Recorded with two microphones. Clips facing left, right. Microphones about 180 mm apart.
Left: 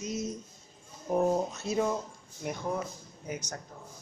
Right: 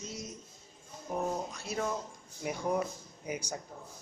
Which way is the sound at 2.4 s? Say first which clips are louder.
Right 1 dB; 10° right (ahead or behind).